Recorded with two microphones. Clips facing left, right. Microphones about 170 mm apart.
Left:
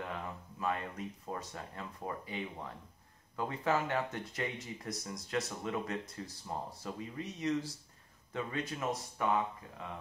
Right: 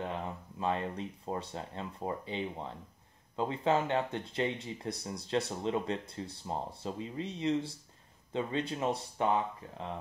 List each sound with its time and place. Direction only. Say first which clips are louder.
0.0 s speech: right 4 dB; 25° right (ahead or behind)